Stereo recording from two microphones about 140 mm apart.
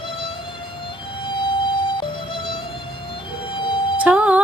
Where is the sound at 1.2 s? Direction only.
35° left (ahead or behind).